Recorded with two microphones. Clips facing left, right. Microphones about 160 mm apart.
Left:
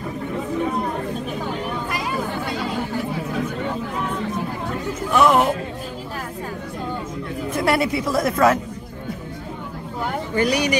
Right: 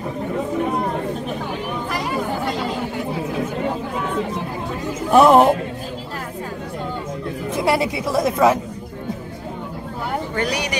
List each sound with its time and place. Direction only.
5.1 s music: 35° right (ahead or behind)
7.5 s speech: 15° right (ahead or behind)
10.3 s speech: 5° left (ahead or behind)